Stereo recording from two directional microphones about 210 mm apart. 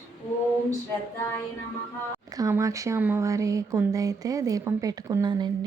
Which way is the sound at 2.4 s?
15° right (ahead or behind).